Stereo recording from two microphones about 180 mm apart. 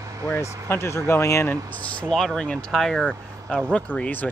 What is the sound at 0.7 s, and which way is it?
Speech, 15° left (ahead or behind).